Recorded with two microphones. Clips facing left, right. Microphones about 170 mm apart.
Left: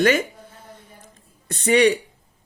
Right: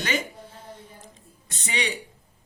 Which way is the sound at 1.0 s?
55° left (ahead or behind).